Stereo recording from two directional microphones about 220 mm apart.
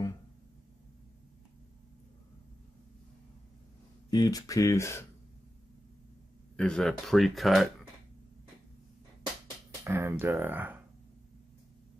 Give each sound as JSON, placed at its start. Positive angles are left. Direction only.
{"t": 4.1, "sound": "speech", "side_deg": 15}
{"t": 6.5, "sound": "speech", "side_deg": 5}
{"t": 9.8, "sound": "speech", "side_deg": -10}